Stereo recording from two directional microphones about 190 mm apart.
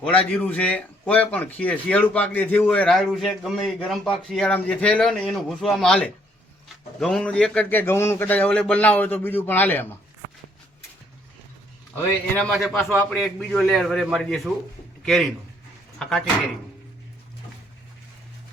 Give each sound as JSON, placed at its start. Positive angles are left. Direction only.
{"t": 0.0, "sound": "speech", "side_deg": 5}
{"t": 12.4, "sound": "a man's voice", "side_deg": 0}